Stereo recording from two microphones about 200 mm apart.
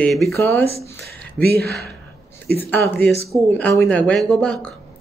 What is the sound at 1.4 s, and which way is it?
Speech, 50° right (ahead or behind).